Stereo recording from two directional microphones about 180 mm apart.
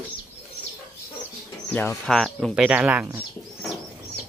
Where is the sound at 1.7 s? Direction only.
5° left (ahead or behind).